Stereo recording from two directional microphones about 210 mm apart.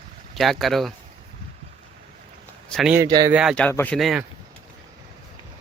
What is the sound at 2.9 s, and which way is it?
Speech, 20° right (ahead or behind).